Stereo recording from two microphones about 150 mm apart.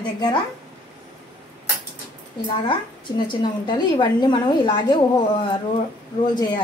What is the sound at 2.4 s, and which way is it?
A woman's voice, 35° left (ahead or behind).